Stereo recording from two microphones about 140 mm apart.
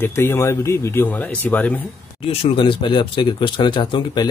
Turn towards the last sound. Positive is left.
turn(degrees=30)  # may be behind; listen again after turning